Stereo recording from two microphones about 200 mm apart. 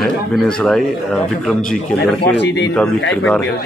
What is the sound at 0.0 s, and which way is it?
Speech, centre (ahead or behind).